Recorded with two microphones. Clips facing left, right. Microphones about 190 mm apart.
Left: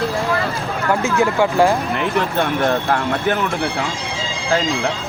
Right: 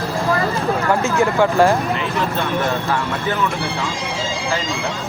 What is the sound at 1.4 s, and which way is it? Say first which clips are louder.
Speech: right 1 dB; 15° left (ahead or behind).